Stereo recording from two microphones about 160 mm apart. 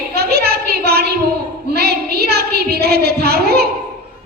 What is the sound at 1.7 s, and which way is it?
A woman's voice, 90° right.